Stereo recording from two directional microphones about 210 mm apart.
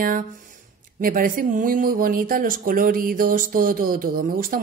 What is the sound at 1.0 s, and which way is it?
Speech, 40° right (ahead or behind).